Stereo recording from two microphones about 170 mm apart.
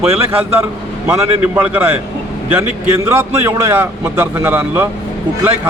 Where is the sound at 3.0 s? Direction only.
15° right (ahead or behind).